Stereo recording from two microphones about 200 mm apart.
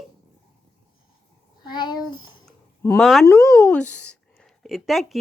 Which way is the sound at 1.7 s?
20° left (ahead or behind).